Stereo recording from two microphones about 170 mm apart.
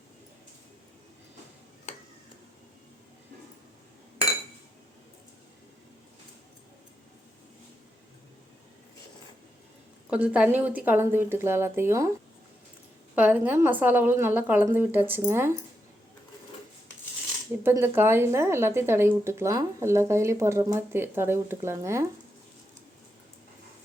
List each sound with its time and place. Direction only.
10.1 s speech: 5° right (ahead or behind)
13.1 s speech: 10° right (ahead or behind)
17.6 s speech: 15° right (ahead or behind)